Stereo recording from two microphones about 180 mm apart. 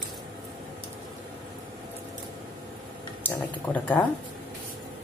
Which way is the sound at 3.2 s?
10° left (ahead or behind).